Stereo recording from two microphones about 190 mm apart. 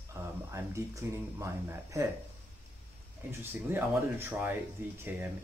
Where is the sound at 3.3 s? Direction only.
10° right (ahead or behind).